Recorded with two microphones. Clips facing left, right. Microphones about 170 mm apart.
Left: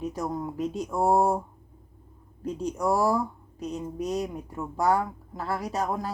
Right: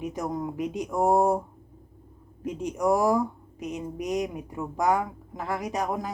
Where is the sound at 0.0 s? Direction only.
15° right (ahead or behind).